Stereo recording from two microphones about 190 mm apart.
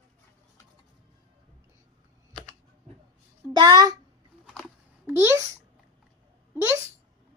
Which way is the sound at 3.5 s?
20° right (ahead or behind).